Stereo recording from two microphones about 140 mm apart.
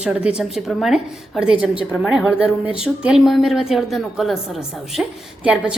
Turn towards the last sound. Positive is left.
turn(degrees=-5)  # may be behind; listen again after turning